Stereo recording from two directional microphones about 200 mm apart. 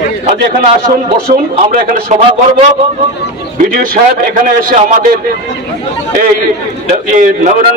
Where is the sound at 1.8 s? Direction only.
40° right (ahead or behind).